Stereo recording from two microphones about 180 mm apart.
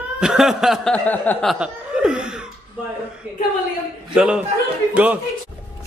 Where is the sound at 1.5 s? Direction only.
5° right (ahead or behind).